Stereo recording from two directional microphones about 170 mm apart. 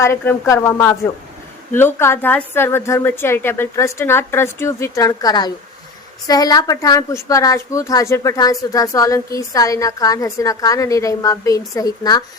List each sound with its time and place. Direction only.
0.0 s a woman's voice: 15° left (ahead or behind)